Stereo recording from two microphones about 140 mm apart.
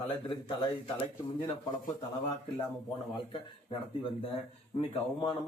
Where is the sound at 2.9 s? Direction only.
35° left (ahead or behind).